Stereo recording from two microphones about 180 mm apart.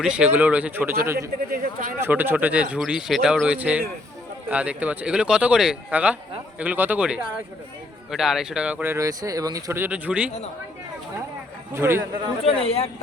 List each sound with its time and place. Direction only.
0.0 s speech: 5° right (ahead or behind)
1.5 s speech: 55° right (ahead or behind)
2.0 s speech: 10° right (ahead or behind)
11.7 s speech: 15° right (ahead or behind)
12.5 s speech: 35° left (ahead or behind)